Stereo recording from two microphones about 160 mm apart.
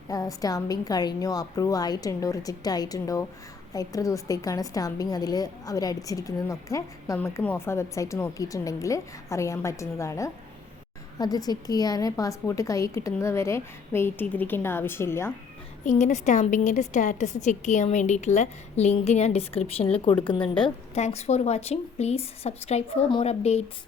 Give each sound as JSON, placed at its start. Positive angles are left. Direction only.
{"t": 0.1, "sound": "a woman's voice", "side_deg": 20}
{"t": 15.8, "sound": "a woman's voice", "side_deg": 50}
{"t": 20.9, "sound": "a woman's voice", "side_deg": 40}